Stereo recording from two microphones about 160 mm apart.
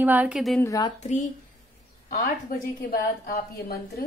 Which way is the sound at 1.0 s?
45° left (ahead or behind).